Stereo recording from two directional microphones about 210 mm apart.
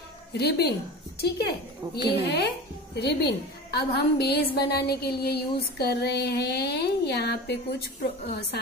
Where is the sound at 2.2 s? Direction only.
50° left (ahead or behind).